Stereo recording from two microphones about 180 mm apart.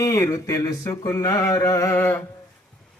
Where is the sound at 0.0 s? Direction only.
15° left (ahead or behind).